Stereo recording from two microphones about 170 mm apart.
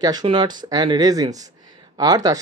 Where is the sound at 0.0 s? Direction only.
25° right (ahead or behind).